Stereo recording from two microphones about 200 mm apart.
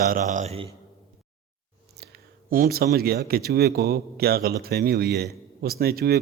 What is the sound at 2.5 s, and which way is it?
Speech, 45° right (ahead or behind).